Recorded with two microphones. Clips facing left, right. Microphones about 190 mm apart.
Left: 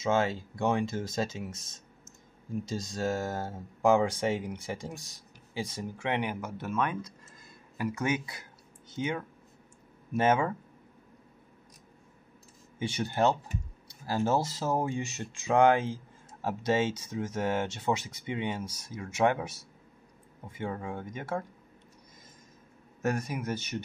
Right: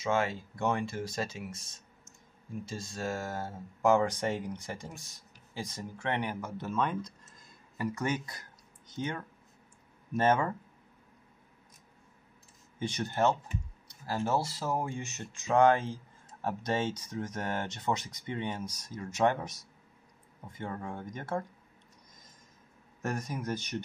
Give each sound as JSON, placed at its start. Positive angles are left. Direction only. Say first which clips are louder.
{"t": 0.0, "sound": "speech", "louder": "left 3 dB", "side_deg": 20}
{"t": 12.7, "sound": "speech", "louder": "left 2 dB", "side_deg": 10}
{"t": 14.7, "sound": "speech", "louder": "left 5 dB", "side_deg": 15}
{"t": 23.1, "sound": "speech", "louder": "left 2 dB", "side_deg": 10}